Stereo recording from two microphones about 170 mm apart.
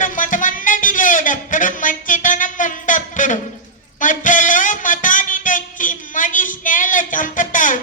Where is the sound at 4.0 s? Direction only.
50° left (ahead or behind).